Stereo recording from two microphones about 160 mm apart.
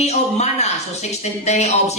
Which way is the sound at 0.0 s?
45° left (ahead or behind).